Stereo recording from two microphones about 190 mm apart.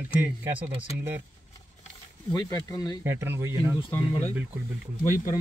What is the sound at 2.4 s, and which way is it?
Speech, 20° left (ahead or behind).